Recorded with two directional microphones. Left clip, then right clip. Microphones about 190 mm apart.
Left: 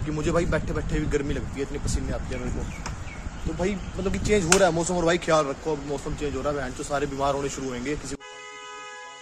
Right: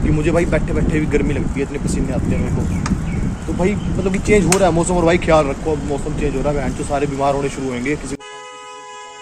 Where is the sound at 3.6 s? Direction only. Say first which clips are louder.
Right 9 dB; 10° left (ahead or behind).